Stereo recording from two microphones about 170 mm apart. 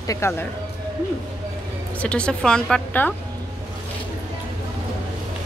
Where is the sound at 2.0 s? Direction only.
5° left (ahead or behind).